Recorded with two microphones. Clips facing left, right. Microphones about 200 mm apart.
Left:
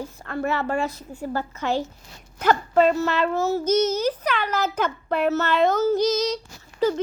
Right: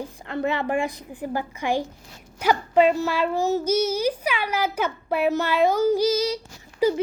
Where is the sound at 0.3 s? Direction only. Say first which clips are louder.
Right 1 dB; 20° right (ahead or behind).